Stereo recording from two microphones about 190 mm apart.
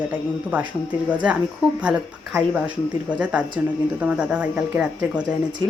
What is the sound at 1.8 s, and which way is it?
Speech, 5° right (ahead or behind).